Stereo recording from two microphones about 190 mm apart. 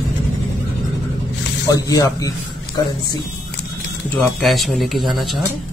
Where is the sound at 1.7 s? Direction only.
20° left (ahead or behind).